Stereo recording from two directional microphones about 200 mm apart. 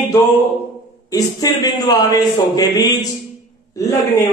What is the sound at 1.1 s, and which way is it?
A man's voice, 20° left (ahead or behind).